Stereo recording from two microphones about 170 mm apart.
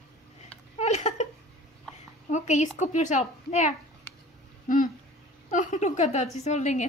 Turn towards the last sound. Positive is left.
turn(degrees=45)  # may be behind; listen again after turning